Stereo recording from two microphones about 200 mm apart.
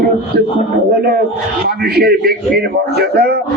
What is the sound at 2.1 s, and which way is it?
Speech, 50° right (ahead or behind).